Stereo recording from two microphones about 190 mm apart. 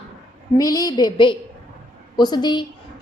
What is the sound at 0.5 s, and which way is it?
A woman's voice, 20° left (ahead or behind).